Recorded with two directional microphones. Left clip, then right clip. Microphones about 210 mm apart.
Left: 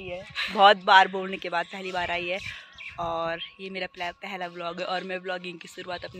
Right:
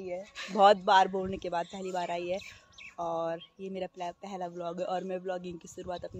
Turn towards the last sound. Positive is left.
turn(degrees=0)  # may be behind; listen again after turning